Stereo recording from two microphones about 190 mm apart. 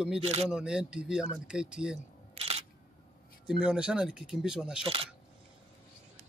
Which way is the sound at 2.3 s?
30° right (ahead or behind).